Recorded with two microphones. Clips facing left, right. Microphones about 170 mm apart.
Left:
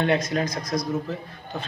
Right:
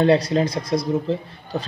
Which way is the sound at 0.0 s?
35° right (ahead or behind).